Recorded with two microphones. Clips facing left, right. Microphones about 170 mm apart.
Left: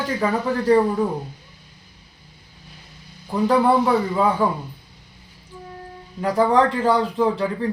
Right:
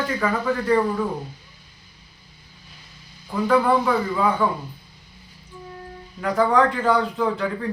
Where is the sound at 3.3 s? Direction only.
30° left (ahead or behind).